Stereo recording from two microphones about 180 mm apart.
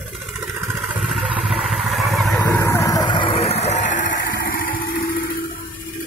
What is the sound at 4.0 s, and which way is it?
Engine, 90° left.